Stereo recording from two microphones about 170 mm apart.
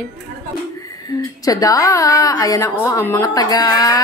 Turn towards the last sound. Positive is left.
turn(degrees=20)  # may be behind; listen again after turning